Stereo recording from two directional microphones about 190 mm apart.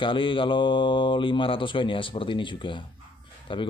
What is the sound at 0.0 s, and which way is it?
Speech, 25° left (ahead or behind).